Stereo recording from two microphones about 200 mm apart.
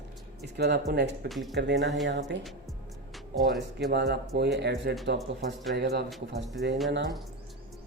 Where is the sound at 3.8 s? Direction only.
55° right (ahead or behind).